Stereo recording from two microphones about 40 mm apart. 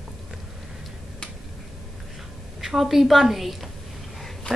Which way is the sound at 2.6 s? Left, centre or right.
Centre.